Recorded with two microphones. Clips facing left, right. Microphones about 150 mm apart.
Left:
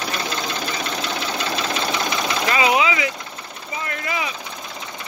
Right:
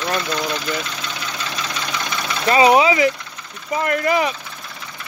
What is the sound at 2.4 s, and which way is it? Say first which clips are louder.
Speech: right 7 dB; 35° right (ahead or behind).